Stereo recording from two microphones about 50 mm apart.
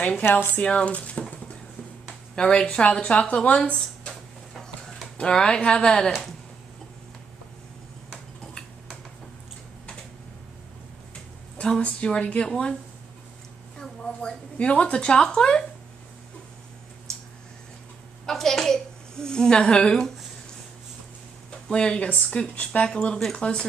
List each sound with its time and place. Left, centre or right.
0.3 s speech: left
0.7 s speech: centre
3.6 s a sound: left
5.1 s a woman's voice: centre
11.8 s speech: left
13.7 s a woman's voice: centre
18.2 s a sound: centre
21.6 s speech: centre